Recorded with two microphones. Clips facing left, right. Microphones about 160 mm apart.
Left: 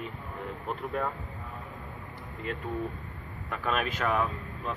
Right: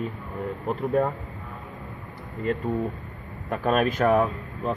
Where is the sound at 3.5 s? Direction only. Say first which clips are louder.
Right 8 dB; 45° right (ahead or behind).